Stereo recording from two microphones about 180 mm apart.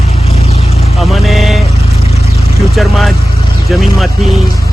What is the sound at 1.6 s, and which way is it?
Vehicle, 35° left (ahead or behind).